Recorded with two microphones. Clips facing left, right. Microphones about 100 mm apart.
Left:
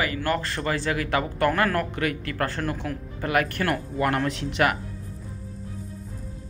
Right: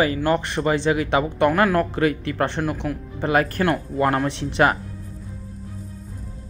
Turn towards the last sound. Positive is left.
turn(degrees=-30)  # may be behind; listen again after turning